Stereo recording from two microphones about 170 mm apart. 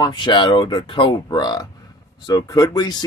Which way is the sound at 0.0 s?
25° left (ahead or behind).